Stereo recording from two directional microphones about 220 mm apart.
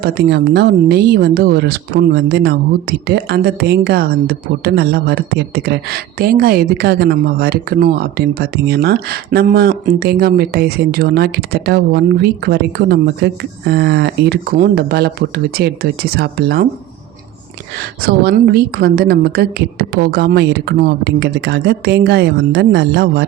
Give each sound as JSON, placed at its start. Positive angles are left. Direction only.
{"t": 0.0, "sound": "speech", "side_deg": -45}
{"t": 18.0, "sound": "speech", "side_deg": -45}